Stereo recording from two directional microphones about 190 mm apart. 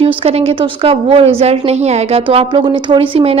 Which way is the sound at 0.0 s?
30° right (ahead or behind).